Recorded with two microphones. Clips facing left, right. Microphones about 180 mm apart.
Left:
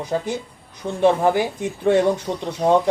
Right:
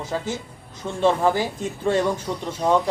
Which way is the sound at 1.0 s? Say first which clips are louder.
Left 3 dB; 15° left (ahead or behind).